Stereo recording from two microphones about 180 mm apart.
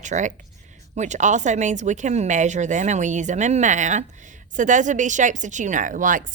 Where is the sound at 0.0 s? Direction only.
45° right (ahead or behind).